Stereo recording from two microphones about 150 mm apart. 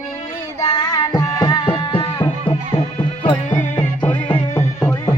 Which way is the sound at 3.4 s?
55° left (ahead or behind).